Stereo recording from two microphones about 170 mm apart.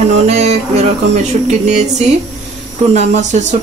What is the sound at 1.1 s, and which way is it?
Speech, 45° right (ahead or behind).